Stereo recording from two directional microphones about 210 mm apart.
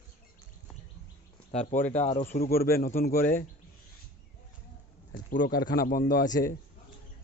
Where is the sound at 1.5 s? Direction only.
35° left (ahead or behind).